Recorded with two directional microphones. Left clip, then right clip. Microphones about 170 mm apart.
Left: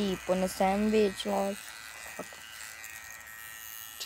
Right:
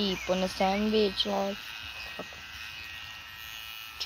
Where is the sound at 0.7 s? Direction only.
5° left (ahead or behind).